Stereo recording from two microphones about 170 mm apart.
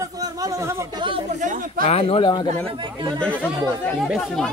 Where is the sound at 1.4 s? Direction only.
50° right (ahead or behind).